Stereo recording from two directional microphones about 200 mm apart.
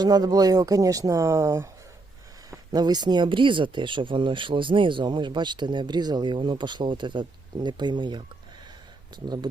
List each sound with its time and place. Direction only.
0.0 s speech: 20° right (ahead or behind)
9.2 s speech: 20° right (ahead or behind)